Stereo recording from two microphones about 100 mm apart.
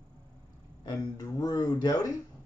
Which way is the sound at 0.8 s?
40° left (ahead or behind).